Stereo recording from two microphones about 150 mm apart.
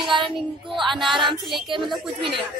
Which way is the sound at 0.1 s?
30° right (ahead or behind).